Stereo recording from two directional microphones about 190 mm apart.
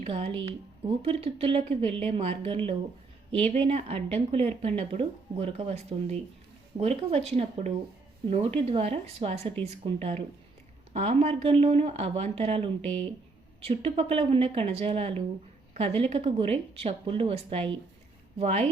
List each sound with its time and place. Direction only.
0.0 s speech: 30° right (ahead or behind)